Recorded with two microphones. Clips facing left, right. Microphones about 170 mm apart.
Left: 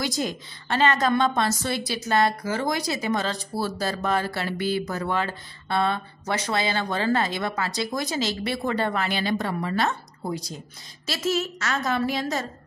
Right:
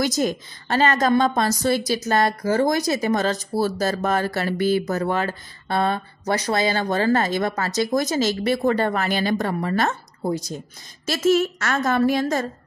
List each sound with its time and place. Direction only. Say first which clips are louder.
0.0 s a woman's voice: right 6 dB; 45° right (ahead or behind)